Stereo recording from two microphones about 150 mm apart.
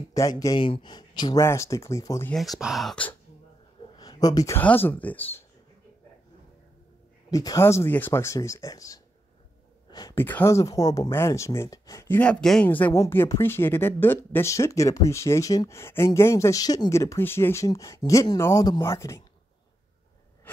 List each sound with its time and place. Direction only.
0.1 s speech: 20° left (ahead or behind)
2.3 s speech: centre (ahead or behind)
3.9 s a sound: 25° left (ahead or behind)
4.6 s speech: 15° left (ahead or behind)
7.2 s speech: 25° left (ahead or behind)
9.8 s a sound: 25° left (ahead or behind)
10.2 s speech: 15° left (ahead or behind)
12.2 s speech: 5° left (ahead or behind)